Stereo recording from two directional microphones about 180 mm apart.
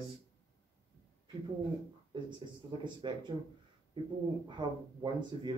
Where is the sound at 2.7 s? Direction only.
25° right (ahead or behind).